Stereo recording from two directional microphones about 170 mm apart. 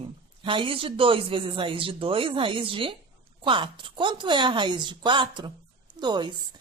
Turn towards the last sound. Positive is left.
turn(degrees=-25)  # may be behind; listen again after turning